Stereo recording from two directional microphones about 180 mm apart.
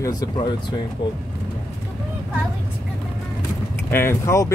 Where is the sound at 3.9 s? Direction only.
15° left (ahead or behind).